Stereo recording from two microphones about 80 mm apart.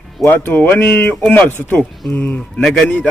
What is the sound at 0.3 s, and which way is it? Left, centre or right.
Speech, left.